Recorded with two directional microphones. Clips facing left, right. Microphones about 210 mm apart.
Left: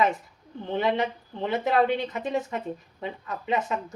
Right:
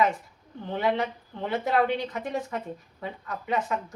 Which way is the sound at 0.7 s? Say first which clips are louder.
Left 1 dB; 20° left (ahead or behind).